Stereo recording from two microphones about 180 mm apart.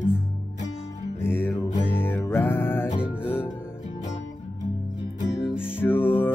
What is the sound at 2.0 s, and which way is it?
Music, 10° left (ahead or behind).